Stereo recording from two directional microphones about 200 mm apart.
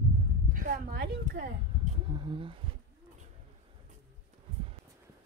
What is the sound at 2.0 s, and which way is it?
Speech, 25° right (ahead or behind).